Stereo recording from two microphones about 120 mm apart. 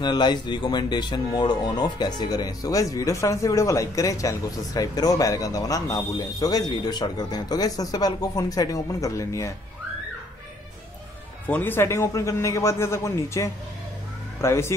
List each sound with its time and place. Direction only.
0.0 s speech: 35° left (ahead or behind)
11.4 s speech: 15° left (ahead or behind)